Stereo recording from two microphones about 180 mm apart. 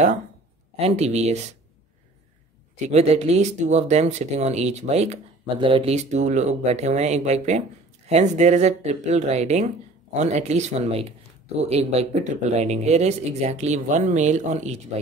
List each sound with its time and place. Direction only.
0.7 s speech: 35° right (ahead or behind)
2.9 s speech: 35° right (ahead or behind)